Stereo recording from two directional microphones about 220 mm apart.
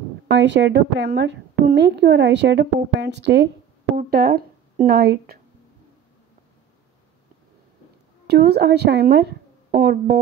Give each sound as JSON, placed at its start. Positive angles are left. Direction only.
{"t": 0.3, "sound": "a woman's voice", "side_deg": -55}
{"t": 8.3, "sound": "speech", "side_deg": -50}